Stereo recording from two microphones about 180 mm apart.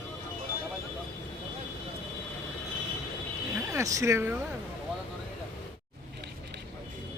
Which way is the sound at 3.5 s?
15° right (ahead or behind).